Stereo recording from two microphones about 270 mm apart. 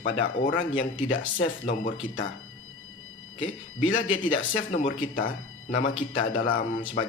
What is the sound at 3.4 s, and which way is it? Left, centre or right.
Speech, left.